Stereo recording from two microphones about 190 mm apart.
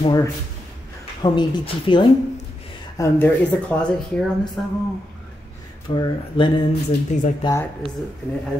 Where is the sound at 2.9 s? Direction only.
15° left (ahead or behind).